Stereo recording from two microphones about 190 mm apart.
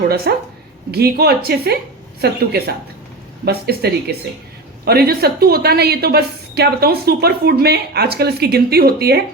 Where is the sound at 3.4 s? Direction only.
55° right (ahead or behind).